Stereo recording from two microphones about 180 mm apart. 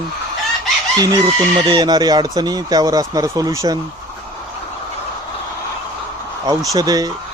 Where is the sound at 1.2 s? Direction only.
25° right (ahead or behind).